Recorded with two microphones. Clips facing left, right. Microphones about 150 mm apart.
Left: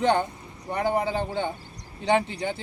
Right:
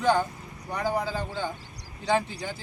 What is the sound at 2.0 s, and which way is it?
Speech, 65° left (ahead or behind).